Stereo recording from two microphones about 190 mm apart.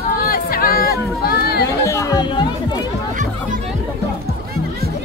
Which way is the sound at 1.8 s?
15° left (ahead or behind).